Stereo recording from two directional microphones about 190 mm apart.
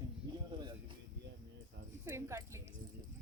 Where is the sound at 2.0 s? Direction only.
15° right (ahead or behind).